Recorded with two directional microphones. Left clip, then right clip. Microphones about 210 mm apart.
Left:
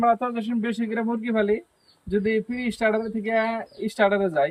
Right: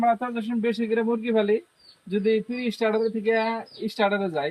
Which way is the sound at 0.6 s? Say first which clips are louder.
Right 6 dB; 10° right (ahead or behind).